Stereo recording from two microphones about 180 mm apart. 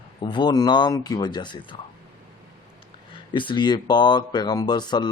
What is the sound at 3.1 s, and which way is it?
Speech, 25° left (ahead or behind).